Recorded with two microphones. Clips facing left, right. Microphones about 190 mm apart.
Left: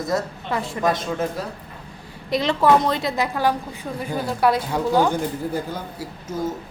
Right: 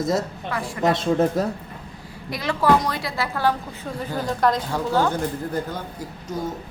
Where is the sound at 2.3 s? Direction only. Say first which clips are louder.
Left 2 dB; 25° left (ahead or behind).